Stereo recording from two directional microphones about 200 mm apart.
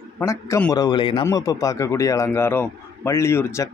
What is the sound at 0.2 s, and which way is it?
A man's voice, 15° left (ahead or behind).